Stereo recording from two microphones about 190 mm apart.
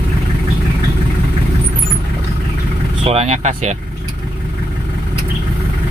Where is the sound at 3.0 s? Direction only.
30° right (ahead or behind).